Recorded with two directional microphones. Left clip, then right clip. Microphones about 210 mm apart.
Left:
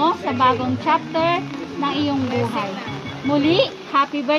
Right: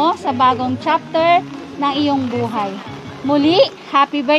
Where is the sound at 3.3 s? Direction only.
55° right (ahead or behind).